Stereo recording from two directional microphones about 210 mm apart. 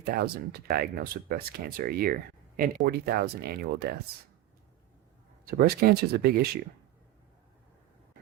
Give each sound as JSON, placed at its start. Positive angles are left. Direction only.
{"t": 0.0, "sound": "speech", "side_deg": -50}
{"t": 5.5, "sound": "speech", "side_deg": -45}